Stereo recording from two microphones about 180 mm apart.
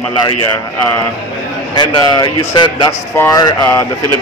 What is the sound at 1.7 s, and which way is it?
A man's voice, 25° left (ahead or behind).